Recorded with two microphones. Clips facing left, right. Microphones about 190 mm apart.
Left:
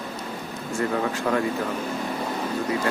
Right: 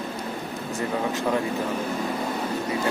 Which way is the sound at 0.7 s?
20° right (ahead or behind).